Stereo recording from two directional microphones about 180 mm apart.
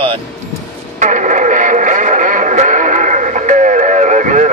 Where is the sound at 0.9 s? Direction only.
40° right (ahead or behind).